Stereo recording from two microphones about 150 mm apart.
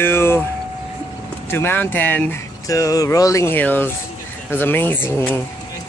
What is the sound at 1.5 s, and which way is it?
Speech, 15° left (ahead or behind).